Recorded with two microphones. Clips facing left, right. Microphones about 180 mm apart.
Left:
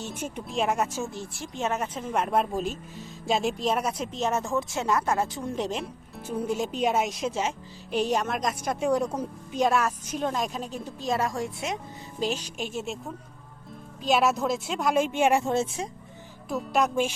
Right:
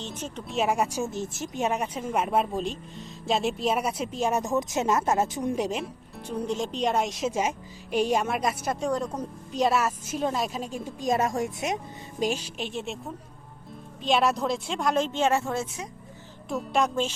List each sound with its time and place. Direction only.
0.0 s speech: 10° left (ahead or behind)
0.5 s speech: 5° right (ahead or behind)
7.3 s speech: 10° right (ahead or behind)
8.8 s a woman's voice: 10° left (ahead or behind); by 10.8 s 5° right (ahead or behind)
11.1 s a woman's voice: 20° right (ahead or behind)
12.2 s speech: 10° right (ahead or behind)
12.5 s a woman's voice: centre (ahead or behind); by 15.9 s 30° left (ahead or behind)
16.5 s a woman's voice: centre (ahead or behind)